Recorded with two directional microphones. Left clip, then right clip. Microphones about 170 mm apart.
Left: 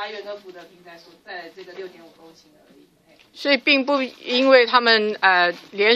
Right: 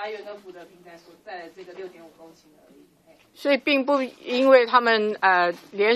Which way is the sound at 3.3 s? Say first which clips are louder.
Left 3 dB; 5° right (ahead or behind).